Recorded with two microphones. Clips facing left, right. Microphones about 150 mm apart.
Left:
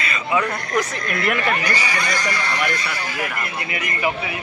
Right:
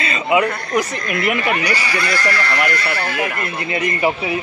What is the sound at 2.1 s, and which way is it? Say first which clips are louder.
Speech: right 4 dB; 20° left (ahead or behind).